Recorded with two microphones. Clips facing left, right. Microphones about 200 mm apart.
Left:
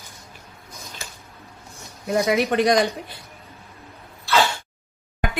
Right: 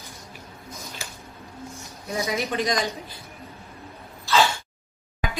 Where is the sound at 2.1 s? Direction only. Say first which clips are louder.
Left 7 dB; 65° left (ahead or behind).